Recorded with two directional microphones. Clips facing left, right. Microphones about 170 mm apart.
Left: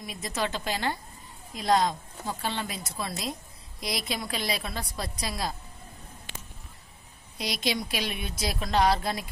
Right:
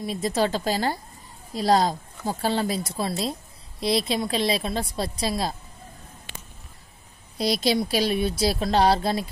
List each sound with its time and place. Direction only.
0.0 s a woman's voice: 30° right (ahead or behind)
7.3 s a woman's voice: 35° right (ahead or behind)